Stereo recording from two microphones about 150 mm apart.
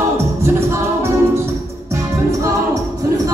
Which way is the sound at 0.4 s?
20° right (ahead or behind).